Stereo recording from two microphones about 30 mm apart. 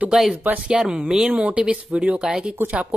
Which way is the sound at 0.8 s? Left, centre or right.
Right.